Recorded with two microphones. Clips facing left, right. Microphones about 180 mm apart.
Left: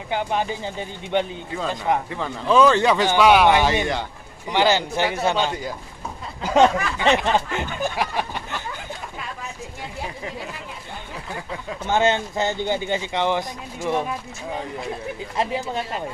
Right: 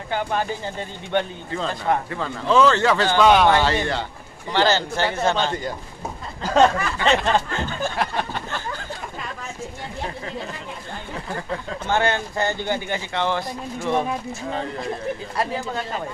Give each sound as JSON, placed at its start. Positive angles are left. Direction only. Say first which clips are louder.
{"t": 0.1, "sound": "speech", "louder": "even", "side_deg": 15}
{"t": 7.0, "sound": "snicker", "louder": "even", "side_deg": 15}
{"t": 11.9, "sound": "speech", "louder": "left 2 dB", "side_deg": 20}